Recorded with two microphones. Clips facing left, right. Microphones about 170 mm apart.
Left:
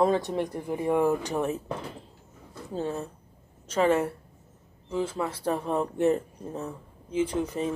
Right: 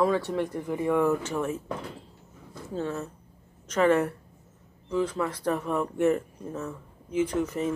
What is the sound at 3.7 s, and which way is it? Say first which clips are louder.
Speech: right 1 dB; 25° left (ahead or behind).